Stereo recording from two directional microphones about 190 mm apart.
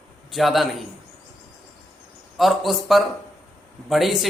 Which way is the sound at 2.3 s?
Centre (ahead or behind).